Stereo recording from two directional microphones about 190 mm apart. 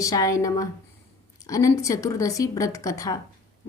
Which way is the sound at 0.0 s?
20° left (ahead or behind).